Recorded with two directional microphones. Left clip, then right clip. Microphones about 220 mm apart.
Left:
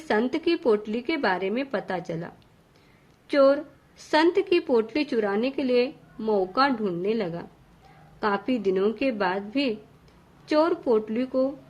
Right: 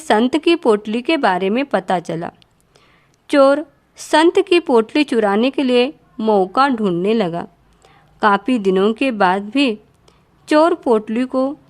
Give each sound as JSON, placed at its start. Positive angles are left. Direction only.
{"t": 0.1, "sound": "a woman's voice", "side_deg": -55}